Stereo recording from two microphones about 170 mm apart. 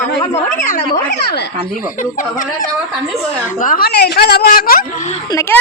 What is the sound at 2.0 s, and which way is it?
A woman's voice, 50° left (ahead or behind).